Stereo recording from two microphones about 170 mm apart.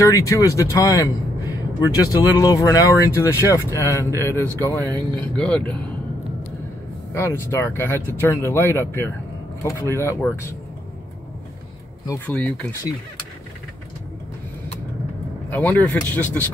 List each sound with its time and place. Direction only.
0.0 s speech: 20° left (ahead or behind)
7.2 s speech: 15° left (ahead or behind)
12.3 s speech: 5° left (ahead or behind)
15.5 s speech: 10° left (ahead or behind)